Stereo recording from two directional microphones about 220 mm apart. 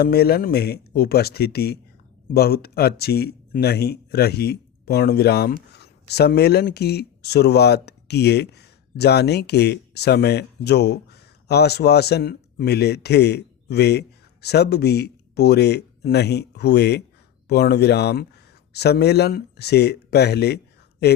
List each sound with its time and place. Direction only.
0.0 s speech: 45° left (ahead or behind)